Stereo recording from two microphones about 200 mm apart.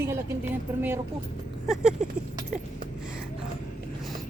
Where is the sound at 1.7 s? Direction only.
Centre (ahead or behind).